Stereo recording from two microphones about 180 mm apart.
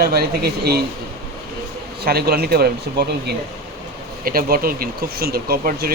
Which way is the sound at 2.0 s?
60° right (ahead or behind).